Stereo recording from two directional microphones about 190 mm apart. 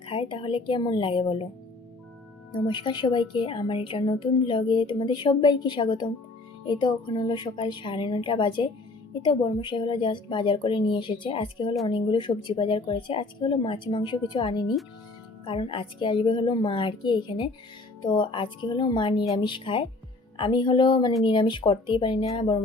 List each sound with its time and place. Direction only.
0.0 s speech: 25° left (ahead or behind)
2.5 s speech: 25° left (ahead or behind)